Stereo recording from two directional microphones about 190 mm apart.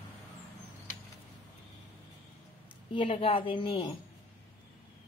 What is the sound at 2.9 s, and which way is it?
Speech, 30° left (ahead or behind).